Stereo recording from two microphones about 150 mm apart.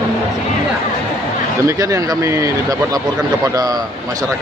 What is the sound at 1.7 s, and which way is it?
Speech, 20° right (ahead or behind).